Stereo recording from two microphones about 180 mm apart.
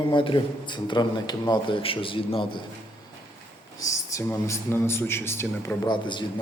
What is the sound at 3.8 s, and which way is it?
Speech, 20° left (ahead or behind).